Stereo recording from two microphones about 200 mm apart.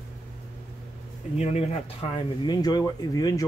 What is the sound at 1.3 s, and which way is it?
Speech, 35° left (ahead or behind).